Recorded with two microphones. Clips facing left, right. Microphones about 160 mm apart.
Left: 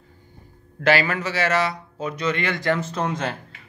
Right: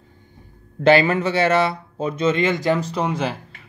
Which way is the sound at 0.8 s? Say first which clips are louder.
Right 5 dB; 25° right (ahead or behind).